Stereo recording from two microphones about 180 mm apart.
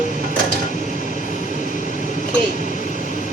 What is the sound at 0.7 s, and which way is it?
Train, 45° left (ahead or behind).